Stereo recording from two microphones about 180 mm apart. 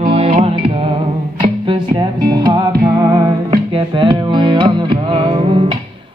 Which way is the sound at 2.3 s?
25° right (ahead or behind).